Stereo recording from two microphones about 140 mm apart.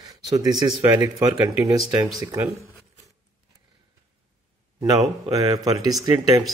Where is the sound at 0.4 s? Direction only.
30° right (ahead or behind).